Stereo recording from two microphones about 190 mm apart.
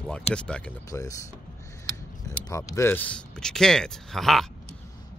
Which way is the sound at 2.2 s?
15° left (ahead or behind).